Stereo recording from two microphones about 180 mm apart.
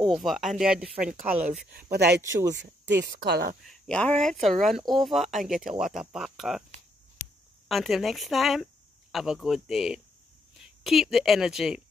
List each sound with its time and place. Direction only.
0.1 s speech: centre (ahead or behind)
1.7 s speech: 60° right (ahead or behind)
2.5 s speech: 75° right (ahead or behind)
3.3 s speech: 65° right (ahead or behind)
3.6 s speech: centre (ahead or behind)
7.6 s a woman's voice: centre (ahead or behind)